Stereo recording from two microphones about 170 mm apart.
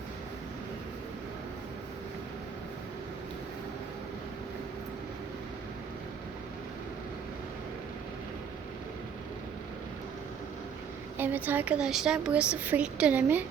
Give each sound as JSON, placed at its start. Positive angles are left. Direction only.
{"t": 11.2, "sound": "speech", "side_deg": -10}